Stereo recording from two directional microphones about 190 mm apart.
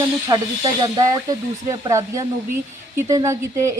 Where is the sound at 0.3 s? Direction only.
20° right (ahead or behind).